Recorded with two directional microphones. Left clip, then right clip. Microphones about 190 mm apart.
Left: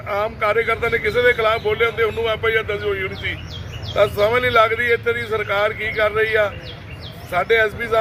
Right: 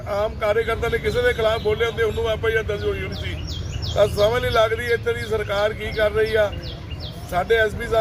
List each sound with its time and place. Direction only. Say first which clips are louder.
0.1 s speech: left 2 dB; 15° left (ahead or behind)